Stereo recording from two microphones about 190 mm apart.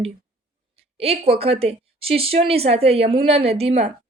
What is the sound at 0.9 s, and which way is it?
A woman's voice, 30° right (ahead or behind).